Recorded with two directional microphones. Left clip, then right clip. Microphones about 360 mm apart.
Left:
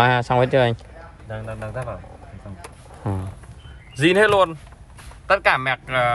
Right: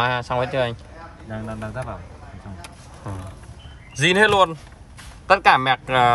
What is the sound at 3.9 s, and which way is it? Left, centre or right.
Speech, centre.